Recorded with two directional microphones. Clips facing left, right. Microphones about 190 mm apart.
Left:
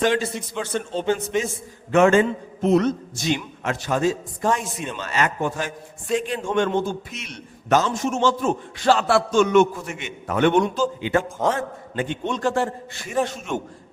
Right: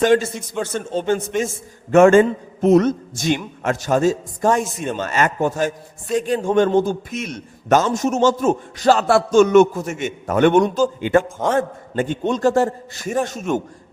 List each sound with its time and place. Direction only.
0.0 s a man's voice: 45° right (ahead or behind)